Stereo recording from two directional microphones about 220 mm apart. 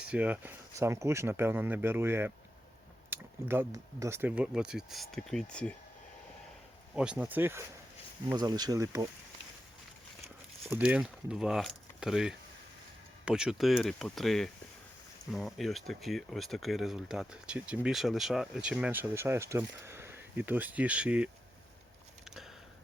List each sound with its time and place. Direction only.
0.0 s speech: 5° right (ahead or behind)
6.9 s speech: 5° right (ahead or behind)
10.7 s speech: 5° right (ahead or behind)